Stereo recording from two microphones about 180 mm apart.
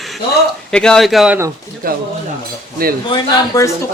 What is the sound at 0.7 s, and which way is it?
Speech, 5° left (ahead or behind).